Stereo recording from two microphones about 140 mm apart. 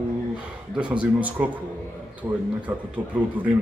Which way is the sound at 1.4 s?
10° right (ahead or behind).